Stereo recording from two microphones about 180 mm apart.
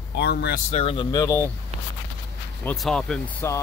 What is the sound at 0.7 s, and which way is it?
Speech, 35° left (ahead or behind).